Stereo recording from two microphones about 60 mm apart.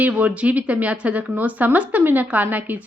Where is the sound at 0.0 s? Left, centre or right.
Right.